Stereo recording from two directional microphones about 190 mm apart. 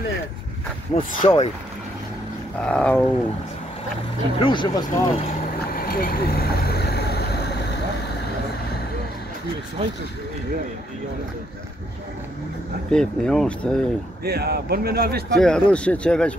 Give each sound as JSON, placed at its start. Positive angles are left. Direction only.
{"t": 0.9, "sound": "speech", "side_deg": 25}
{"t": 2.6, "sound": "dog", "side_deg": 5}
{"t": 4.4, "sound": "speech", "side_deg": 25}
{"t": 5.8, "sound": "vehicle", "side_deg": 50}
{"t": 12.9, "sound": "speech", "side_deg": 5}
{"t": 14.2, "sound": "speech", "side_deg": -55}
{"t": 15.3, "sound": "speech", "side_deg": 5}